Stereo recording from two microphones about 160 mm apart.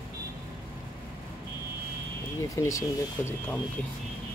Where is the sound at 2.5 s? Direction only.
20° left (ahead or behind).